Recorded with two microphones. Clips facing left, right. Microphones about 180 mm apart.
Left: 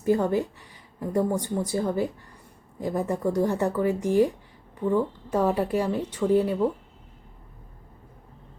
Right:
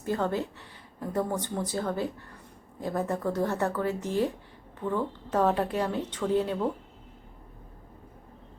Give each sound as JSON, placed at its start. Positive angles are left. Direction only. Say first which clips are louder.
{"t": 0.0, "sound": "speech", "louder": "left 6 dB", "side_deg": 10}